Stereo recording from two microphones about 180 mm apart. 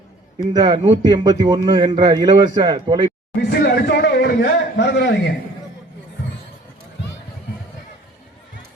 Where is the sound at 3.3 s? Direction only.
60° left (ahead or behind).